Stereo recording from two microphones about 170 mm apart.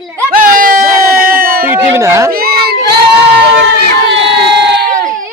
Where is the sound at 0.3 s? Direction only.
55° right (ahead or behind).